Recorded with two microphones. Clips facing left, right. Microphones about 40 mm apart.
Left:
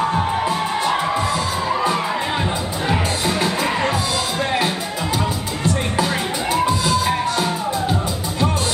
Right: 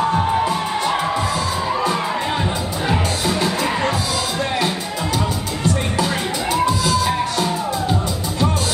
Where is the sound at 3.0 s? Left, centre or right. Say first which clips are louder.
Even; centre.